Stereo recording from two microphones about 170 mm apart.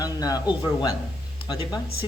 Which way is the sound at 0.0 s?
20° left (ahead or behind).